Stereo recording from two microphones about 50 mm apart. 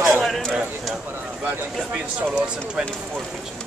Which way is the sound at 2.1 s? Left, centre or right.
Right.